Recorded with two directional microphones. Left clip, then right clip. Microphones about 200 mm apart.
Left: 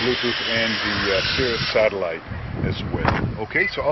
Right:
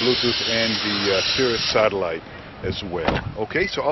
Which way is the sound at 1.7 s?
15° right (ahead or behind).